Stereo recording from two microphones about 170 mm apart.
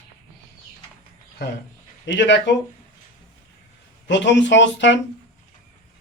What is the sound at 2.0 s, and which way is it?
Speech, 90° left.